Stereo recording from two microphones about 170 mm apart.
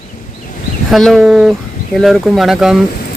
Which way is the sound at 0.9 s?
Centre (ahead or behind).